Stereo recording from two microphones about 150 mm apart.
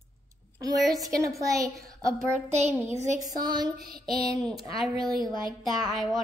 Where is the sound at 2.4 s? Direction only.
45° right (ahead or behind).